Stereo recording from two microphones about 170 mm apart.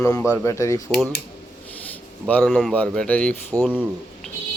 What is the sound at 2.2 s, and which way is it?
Speech, 10° left (ahead or behind).